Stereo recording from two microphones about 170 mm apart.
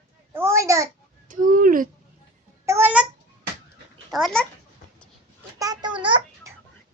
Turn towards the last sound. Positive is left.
turn(degrees=-30)  # may be behind; listen again after turning